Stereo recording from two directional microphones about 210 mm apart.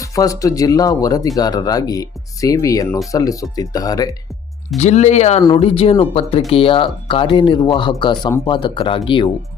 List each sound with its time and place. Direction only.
0.0 s speech: 15° left (ahead or behind)
4.8 s speech: 35° left (ahead or behind)